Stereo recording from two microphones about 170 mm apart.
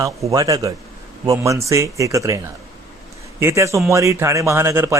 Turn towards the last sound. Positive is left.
turn(degrees=-15)  # may be behind; listen again after turning